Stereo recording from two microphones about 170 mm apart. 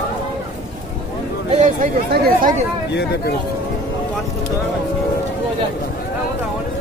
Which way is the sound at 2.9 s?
90° left.